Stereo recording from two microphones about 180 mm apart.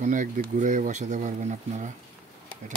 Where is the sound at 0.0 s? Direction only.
45° right (ahead or behind).